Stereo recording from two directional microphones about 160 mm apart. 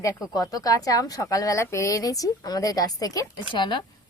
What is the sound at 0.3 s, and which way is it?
A woman's voice, 20° left (ahead or behind).